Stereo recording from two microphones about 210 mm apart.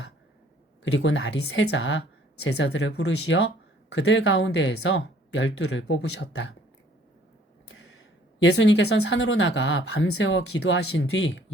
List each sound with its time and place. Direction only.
0.9 s speech: 60° left (ahead or behind)
8.4 s speech: 60° left (ahead or behind)
10.8 s speech: 60° left (ahead or behind)